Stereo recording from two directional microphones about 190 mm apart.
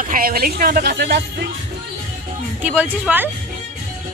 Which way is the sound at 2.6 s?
5° right (ahead or behind).